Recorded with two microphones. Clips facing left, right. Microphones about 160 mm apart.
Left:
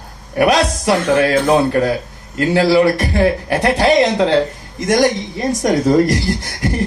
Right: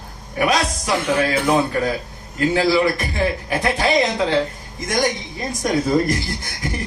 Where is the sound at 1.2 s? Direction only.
55° left (ahead or behind).